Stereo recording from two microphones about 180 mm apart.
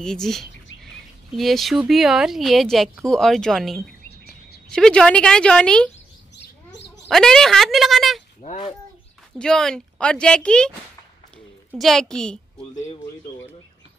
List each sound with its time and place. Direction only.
0.0 s speech: 5° left (ahead or behind)
7.1 s speech: centre (ahead or behind)
8.4 s speech: 35° left (ahead or behind)
9.4 s speech: 5° left (ahead or behind)
11.7 s speech: centre (ahead or behind)